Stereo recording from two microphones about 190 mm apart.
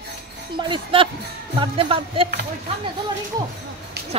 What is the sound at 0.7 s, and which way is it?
Speech, 25° right (ahead or behind).